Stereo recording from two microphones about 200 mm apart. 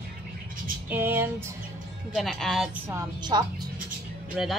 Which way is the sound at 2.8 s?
15° right (ahead or behind).